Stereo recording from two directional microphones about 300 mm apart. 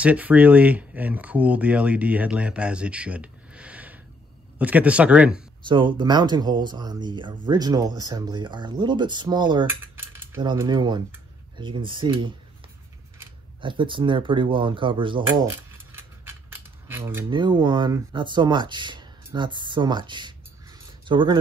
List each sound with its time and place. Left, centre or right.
0.0 s speech: centre
5.7 s speech: centre